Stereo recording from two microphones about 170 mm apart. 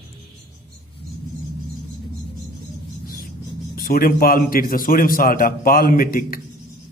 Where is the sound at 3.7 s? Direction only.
60° left (ahead or behind).